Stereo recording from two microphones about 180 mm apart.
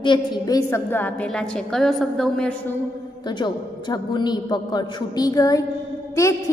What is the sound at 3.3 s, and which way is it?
A woman's voice, 25° left (ahead or behind).